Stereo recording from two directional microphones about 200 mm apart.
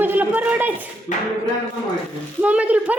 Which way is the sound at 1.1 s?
40° left (ahead or behind).